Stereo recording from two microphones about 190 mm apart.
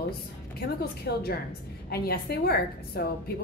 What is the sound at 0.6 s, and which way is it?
A woman's voice, 55° left (ahead or behind).